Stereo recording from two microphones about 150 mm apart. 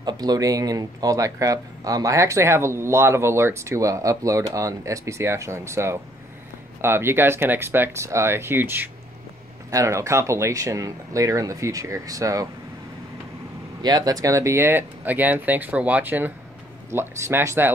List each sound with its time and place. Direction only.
0.0 s speech: 25° right (ahead or behind)
13.8 s speech: 25° right (ahead or behind)